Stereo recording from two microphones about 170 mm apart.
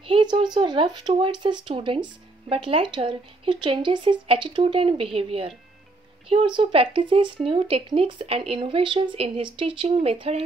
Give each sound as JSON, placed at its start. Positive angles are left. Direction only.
{"t": 0.0, "sound": "speech", "side_deg": -30}